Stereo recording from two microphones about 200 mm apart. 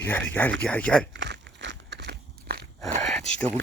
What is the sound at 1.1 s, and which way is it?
Biting, 65° right (ahead or behind).